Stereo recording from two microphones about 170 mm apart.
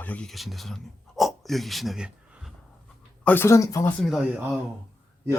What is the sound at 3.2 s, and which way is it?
Speech, 10° left (ahead or behind).